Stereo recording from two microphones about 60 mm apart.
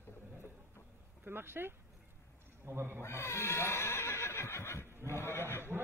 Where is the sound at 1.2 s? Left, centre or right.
Right.